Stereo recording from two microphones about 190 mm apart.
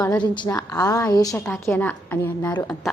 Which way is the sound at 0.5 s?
15° left (ahead or behind).